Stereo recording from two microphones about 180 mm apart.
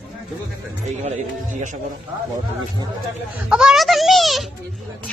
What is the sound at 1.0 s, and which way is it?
Speech, 40° right (ahead or behind).